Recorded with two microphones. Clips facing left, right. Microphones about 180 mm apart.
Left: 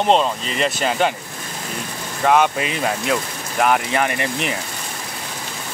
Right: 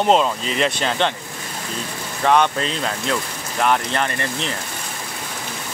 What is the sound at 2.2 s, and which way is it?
Speech, 5° left (ahead or behind).